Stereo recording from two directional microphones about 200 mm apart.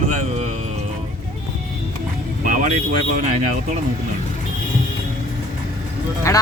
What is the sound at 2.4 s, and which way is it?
Vehicle, 40° right (ahead or behind).